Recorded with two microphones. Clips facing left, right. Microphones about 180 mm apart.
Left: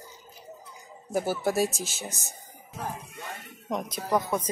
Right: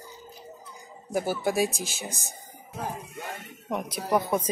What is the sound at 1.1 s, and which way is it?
Speech, centre (ahead or behind).